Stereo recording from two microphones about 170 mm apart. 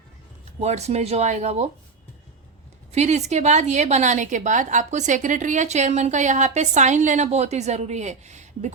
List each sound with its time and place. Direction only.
0.6 s speech: 40° right (ahead or behind)
2.9 s a woman's voice: 40° right (ahead or behind)